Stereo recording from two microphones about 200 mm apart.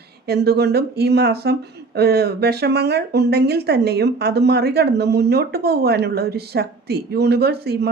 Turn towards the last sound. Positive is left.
turn(degrees=-55)  # may be behind; listen again after turning